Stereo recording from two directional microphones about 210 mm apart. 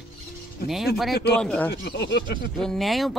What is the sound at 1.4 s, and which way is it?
Speech, 5° left (ahead or behind).